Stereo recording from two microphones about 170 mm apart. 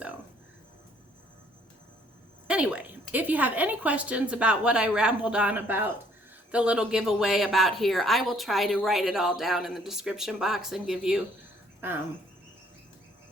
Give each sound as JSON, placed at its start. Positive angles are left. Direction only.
{"t": 2.5, "sound": "a woman's voice", "side_deg": -5}